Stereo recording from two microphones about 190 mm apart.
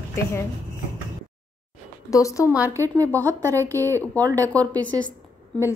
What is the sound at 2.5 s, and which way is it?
A woman's voice, 10° right (ahead or behind).